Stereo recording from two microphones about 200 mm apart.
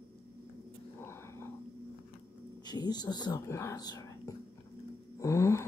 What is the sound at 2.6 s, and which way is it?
Speech, 20° left (ahead or behind).